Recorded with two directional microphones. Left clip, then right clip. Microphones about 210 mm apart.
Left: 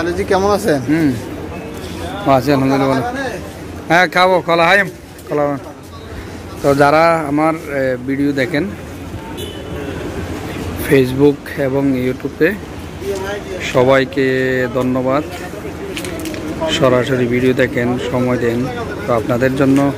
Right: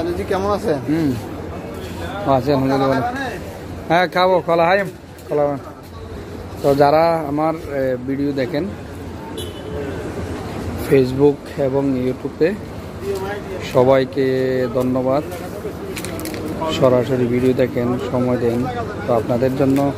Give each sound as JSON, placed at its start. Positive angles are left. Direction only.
{"t": 0.0, "sound": "speech", "side_deg": 30}
{"t": 2.2, "sound": "speech", "side_deg": 0}
{"t": 6.6, "sound": "speech", "side_deg": 0}
{"t": 10.8, "sound": "speech", "side_deg": 0}
{"t": 13.6, "sound": "speech", "side_deg": -5}
{"t": 16.6, "sound": "speech", "side_deg": 0}